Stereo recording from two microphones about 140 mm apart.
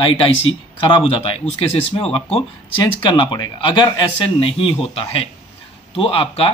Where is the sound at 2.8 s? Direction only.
35° left (ahead or behind).